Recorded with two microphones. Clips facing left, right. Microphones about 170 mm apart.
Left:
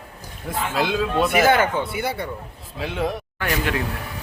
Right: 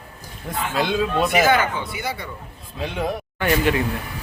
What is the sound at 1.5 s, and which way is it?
Speech, 55° left (ahead or behind).